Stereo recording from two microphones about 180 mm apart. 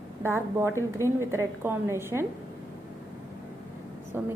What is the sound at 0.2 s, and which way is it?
A woman's voice, 15° right (ahead or behind).